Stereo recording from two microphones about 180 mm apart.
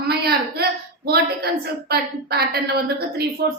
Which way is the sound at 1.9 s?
60° right (ahead or behind).